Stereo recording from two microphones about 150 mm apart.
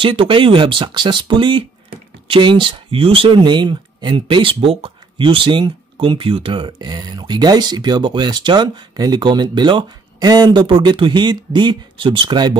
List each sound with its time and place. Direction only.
0.0 s speech: 35° right (ahead or behind)